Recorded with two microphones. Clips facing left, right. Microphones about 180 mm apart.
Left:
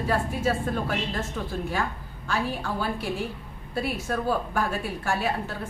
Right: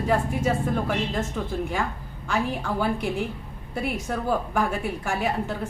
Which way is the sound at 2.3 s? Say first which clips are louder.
Right 2 dB; 15° right (ahead or behind).